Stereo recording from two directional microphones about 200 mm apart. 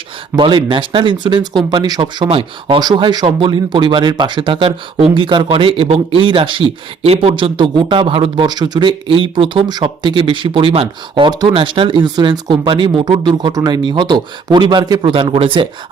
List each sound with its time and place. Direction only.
0.3 s speech: 25° right (ahead or behind)